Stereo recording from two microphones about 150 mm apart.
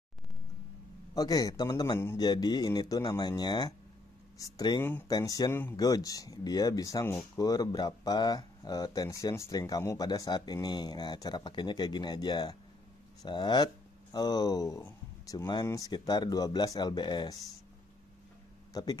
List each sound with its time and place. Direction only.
1.1 s speech: 25° left (ahead or behind)
5.1 s speech: 25° left (ahead or behind)
18.7 s speech: 25° left (ahead or behind)